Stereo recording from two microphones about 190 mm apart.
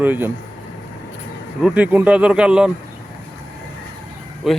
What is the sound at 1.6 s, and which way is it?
Speech, 10° right (ahead or behind).